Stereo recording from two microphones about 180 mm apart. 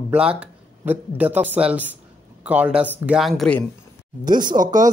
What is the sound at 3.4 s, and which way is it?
Speech, 5° left (ahead or behind).